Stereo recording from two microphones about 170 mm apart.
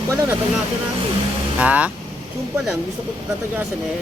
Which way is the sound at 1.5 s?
5° right (ahead or behind).